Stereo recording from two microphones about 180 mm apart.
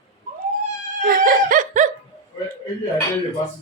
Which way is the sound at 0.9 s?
50° right (ahead or behind).